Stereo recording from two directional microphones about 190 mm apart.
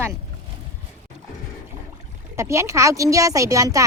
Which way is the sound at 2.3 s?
15° right (ahead or behind).